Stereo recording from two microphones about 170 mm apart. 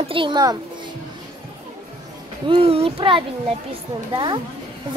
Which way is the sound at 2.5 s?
35° right (ahead or behind).